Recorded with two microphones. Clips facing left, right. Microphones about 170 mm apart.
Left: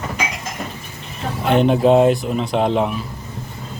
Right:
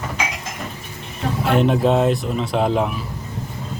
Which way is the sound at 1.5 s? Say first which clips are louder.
Left 3 dB; centre (ahead or behind).